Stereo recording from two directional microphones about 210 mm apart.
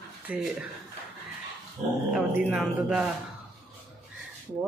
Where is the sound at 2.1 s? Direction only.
5° right (ahead or behind).